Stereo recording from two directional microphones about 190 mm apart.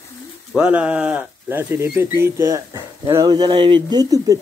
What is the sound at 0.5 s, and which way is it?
Speech, 5° right (ahead or behind).